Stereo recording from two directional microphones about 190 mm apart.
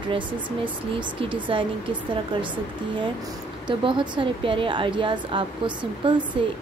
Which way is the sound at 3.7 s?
25° right (ahead or behind).